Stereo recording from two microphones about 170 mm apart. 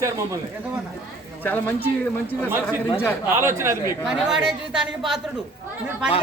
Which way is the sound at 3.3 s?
15° right (ahead or behind).